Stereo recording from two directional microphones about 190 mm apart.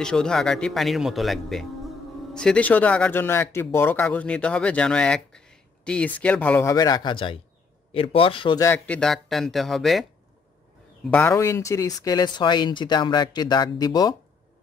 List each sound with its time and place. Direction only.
0.0 s speech: 5° left (ahead or behind); by 8.6 s 25° left (ahead or behind)
8.6 s speech: 10° left (ahead or behind)
11.1 s speech: 10° left (ahead or behind)